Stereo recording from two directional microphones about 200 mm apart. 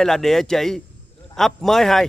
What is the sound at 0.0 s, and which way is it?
Speech, centre (ahead or behind).